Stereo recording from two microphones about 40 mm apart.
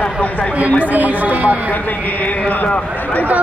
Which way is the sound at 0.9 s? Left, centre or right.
Right.